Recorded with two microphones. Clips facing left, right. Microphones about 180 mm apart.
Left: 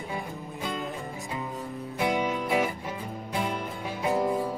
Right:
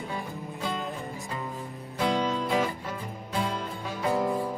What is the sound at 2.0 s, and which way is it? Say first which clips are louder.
Music: right 1 dB; 15° left (ahead or behind).